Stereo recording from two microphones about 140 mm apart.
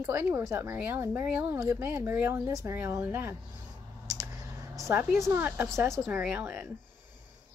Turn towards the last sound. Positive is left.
turn(degrees=-15)  # may be behind; listen again after turning